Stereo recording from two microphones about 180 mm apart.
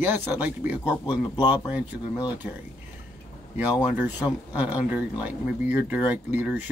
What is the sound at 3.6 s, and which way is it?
Speech, 10° right (ahead or behind).